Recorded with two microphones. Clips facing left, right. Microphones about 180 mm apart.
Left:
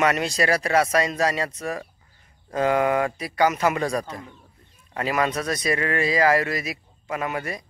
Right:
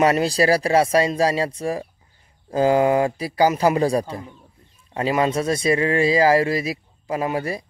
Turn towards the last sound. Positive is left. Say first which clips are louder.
# right 5 dB
turn(degrees=-30)  # may be behind; listen again after turning